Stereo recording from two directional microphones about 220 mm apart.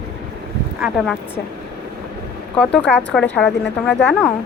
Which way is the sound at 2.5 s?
5° left (ahead or behind).